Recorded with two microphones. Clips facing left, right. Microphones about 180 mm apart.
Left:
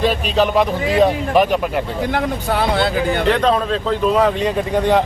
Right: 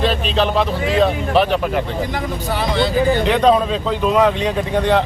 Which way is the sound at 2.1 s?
60° left (ahead or behind).